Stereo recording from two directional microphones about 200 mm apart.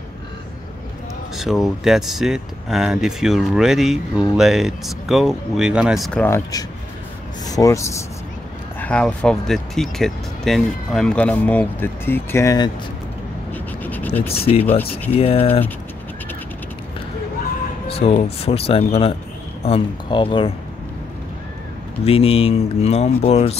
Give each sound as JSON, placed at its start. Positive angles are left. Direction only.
{"t": 1.3, "sound": "speech", "side_deg": 0}
{"t": 6.2, "sound": "speech", "side_deg": 15}
{"t": 13.5, "sound": "scratch", "side_deg": 10}
{"t": 14.2, "sound": "speech", "side_deg": 30}
{"t": 17.8, "sound": "speech", "side_deg": 30}
{"t": 22.0, "sound": "speech", "side_deg": 30}